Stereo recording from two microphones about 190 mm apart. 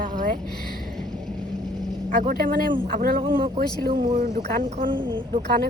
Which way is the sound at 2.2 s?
45° right (ahead or behind).